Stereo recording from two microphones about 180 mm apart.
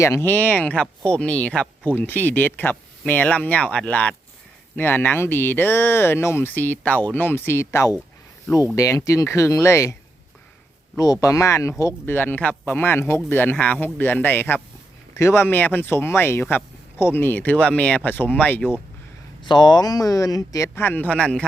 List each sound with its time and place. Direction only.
0.0 s speech: 15° left (ahead or behind)
10.9 s speech: 20° left (ahead or behind)
19.5 s speech: 25° left (ahead or behind); by 21.4 s 5° left (ahead or behind)